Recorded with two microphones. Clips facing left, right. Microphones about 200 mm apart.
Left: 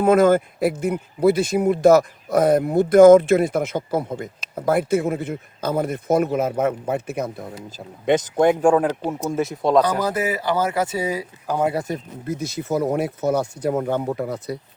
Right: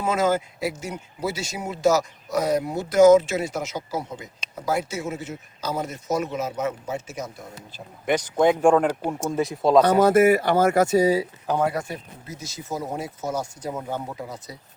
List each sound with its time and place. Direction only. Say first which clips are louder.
0.0 s speech: left 8 dB; 55° left (ahead or behind)
8.0 s speech: left 5 dB; 25° left (ahead or behind)
8.4 s speech: even; 10° left (ahead or behind)
10.3 s speech: right 3 dB; 50° right (ahead or behind); by 11.3 s 35° right (ahead or behind)
11.6 s speech: left 4 dB; 30° left (ahead or behind)
11.9 s speech: left 8 dB; 55° left (ahead or behind)